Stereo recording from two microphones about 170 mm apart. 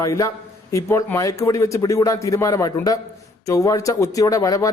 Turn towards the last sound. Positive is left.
turn(degrees=20)  # may be behind; listen again after turning